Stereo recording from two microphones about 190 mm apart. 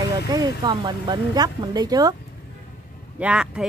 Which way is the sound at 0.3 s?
20° right (ahead or behind).